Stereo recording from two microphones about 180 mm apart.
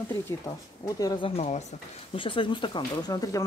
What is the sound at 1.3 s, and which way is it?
Speech, 35° left (ahead or behind).